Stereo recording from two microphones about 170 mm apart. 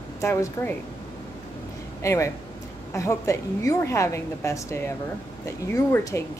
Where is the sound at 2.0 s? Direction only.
15° left (ahead or behind).